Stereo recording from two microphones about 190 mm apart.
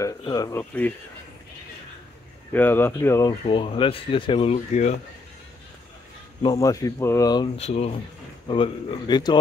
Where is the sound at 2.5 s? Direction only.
10° left (ahead or behind).